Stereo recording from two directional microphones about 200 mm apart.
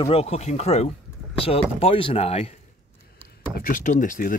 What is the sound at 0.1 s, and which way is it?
Speech, 30° left (ahead or behind).